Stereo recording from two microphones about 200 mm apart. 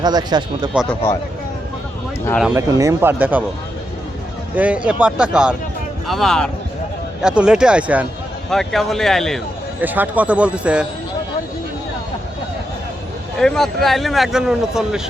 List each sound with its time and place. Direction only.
0.0 s speech: 20° right (ahead or behind)
0.7 s speech: 5° right (ahead or behind)
2.4 s speech: 5° right (ahead or behind)
4.5 s speech: 5° right (ahead or behind)
9.8 s speech: 10° right (ahead or behind)
13.4 s speech: 5° left (ahead or behind)